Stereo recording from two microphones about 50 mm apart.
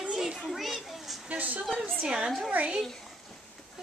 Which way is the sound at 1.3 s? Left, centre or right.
Right.